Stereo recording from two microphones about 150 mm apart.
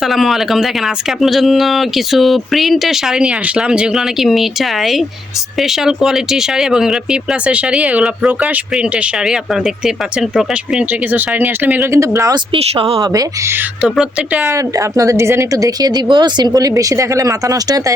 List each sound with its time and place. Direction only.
0.0 s speech: centre (ahead or behind); by 12.4 s 20° right (ahead or behind)
12.5 s speech: 40° right (ahead or behind)
13.1 s speech: 15° right (ahead or behind)
14.4 s speech: 20° right (ahead or behind)